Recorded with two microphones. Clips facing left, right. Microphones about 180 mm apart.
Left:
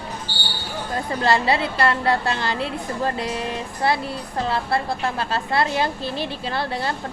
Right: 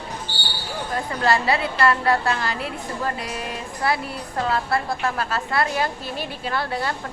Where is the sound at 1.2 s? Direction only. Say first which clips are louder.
Left 1 dB; 25° left (ahead or behind).